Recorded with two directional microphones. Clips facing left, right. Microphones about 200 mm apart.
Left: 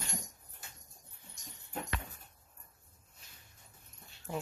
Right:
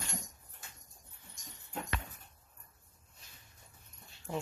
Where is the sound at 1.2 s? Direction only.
15° left (ahead or behind).